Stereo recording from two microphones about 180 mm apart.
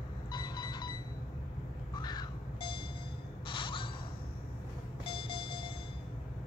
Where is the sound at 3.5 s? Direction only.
30° left (ahead or behind).